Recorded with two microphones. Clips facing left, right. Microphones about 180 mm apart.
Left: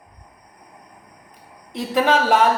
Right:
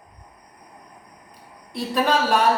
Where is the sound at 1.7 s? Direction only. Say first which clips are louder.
Left 3 dB; 20° left (ahead or behind).